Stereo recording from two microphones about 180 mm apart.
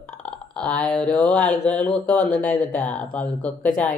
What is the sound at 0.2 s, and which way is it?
A woman's voice, 5° left (ahead or behind).